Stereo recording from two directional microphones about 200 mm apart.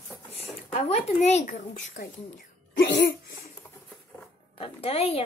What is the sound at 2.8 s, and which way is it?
Cough, 55° left (ahead or behind).